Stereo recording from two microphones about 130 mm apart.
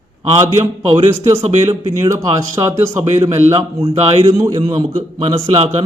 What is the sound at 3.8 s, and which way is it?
Speech, 50° right (ahead or behind).